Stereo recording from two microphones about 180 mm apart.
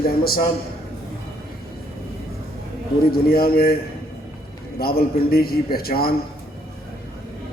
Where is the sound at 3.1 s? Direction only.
55° left (ahead or behind).